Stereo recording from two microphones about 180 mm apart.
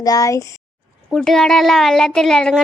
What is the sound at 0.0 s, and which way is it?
Speech, 20° left (ahead or behind).